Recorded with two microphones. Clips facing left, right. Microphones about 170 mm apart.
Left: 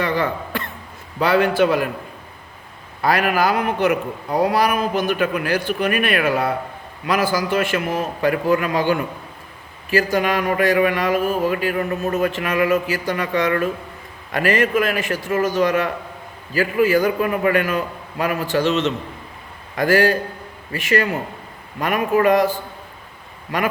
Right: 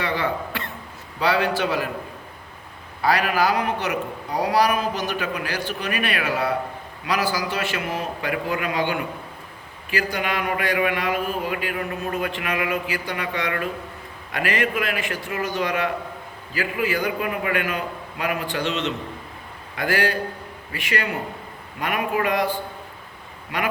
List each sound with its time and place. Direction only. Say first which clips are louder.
0.0 s throat clearing: left 3 dB; 45° left (ahead or behind)
1.2 s speech: left 5 dB; 50° left (ahead or behind)
3.0 s speech: left 3 dB; 55° left (ahead or behind)
23.5 s speech: left 5 dB; 45° left (ahead or behind)